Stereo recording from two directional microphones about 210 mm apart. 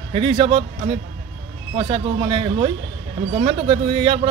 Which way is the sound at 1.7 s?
25° right (ahead or behind).